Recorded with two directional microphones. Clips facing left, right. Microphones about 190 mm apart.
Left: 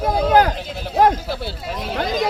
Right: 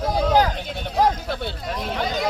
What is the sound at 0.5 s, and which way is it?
Speech, centre (ahead or behind).